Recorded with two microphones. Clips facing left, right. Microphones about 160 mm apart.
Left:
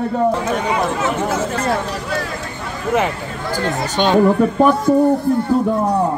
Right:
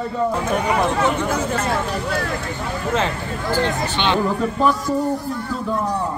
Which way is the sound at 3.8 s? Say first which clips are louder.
Left 6 dB; 40° left (ahead or behind).